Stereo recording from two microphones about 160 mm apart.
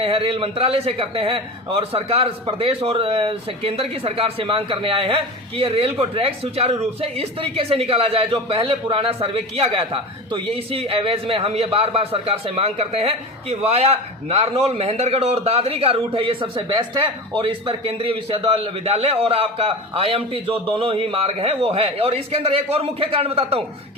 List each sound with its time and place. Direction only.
0.0 s a man's voice: 35° right (ahead or behind)